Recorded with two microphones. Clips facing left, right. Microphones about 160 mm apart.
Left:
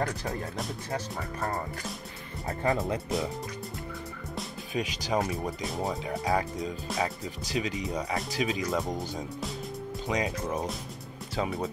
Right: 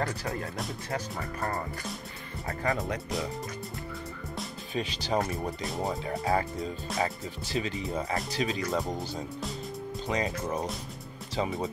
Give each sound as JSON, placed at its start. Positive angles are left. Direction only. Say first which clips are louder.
{"t": 1.1, "sound": "speech", "louder": "even", "side_deg": 0}
{"t": 2.4, "sound": "speech", "louder": "left 2 dB", "side_deg": 25}
{"t": 4.7, "sound": "speech", "louder": "even", "side_deg": 5}
{"t": 10.0, "sound": "speech", "louder": "even", "side_deg": 0}